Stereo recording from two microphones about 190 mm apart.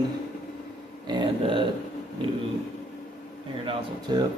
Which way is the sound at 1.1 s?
25° right (ahead or behind).